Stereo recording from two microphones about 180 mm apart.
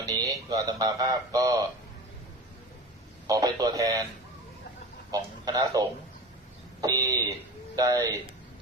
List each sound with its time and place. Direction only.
0.0 s speech: 20° right (ahead or behind)
3.2 s speech: 20° right (ahead or behind)
5.1 s speech: 20° right (ahead or behind)
6.8 s speech: 20° right (ahead or behind)